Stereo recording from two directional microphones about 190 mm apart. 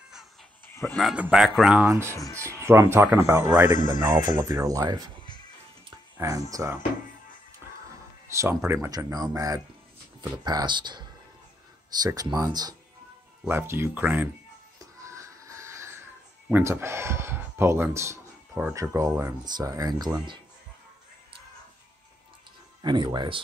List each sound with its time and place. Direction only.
0.7 s a sound: 10° left (ahead or behind)
0.9 s speech: 5° right (ahead or behind)
3.7 s speech: 40° left (ahead or behind)
4.0 s speech: 15° right (ahead or behind)
6.1 s speech: 20° right (ahead or behind)
8.3 s speech: 15° right (ahead or behind)
14.8 s music: 15° right (ahead or behind)
16.4 s speech: 10° right (ahead or behind)
22.8 s speech: 20° right (ahead or behind)